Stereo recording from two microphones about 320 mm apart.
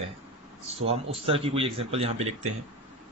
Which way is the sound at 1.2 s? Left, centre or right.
Centre.